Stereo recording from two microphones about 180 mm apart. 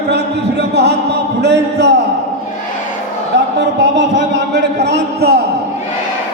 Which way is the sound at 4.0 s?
75° right (ahead or behind).